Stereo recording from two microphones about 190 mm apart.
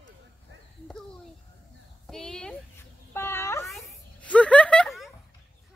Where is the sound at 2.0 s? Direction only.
Centre (ahead or behind).